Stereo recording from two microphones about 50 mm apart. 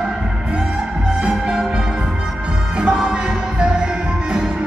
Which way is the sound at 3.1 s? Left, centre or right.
Centre.